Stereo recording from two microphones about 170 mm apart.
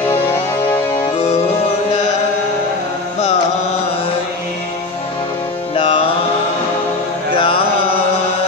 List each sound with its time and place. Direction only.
5.8 s music: 30° left (ahead or behind)
7.3 s mantra: 30° left (ahead or behind)